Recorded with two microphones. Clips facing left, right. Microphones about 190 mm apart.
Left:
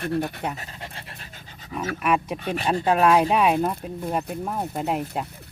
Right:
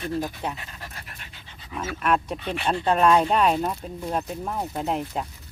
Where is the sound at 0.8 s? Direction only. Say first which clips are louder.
Left 3 dB; 30° left (ahead or behind).